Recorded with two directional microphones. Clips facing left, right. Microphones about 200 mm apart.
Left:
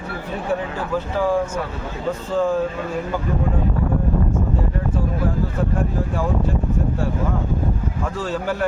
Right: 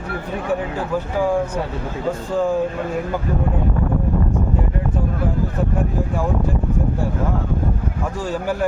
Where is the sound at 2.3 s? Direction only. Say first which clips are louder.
Even; 15° right (ahead or behind).